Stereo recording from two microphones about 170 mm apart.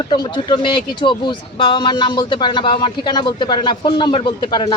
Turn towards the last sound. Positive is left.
turn(degrees=25)  # may be behind; listen again after turning